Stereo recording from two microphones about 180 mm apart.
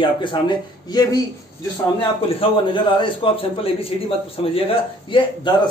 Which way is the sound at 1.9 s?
30° left (ahead or behind).